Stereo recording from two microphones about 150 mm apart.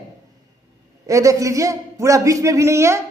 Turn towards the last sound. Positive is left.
turn(degrees=-20)  # may be behind; listen again after turning